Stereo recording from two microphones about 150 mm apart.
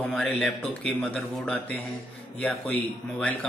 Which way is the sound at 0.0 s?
5° left (ahead or behind).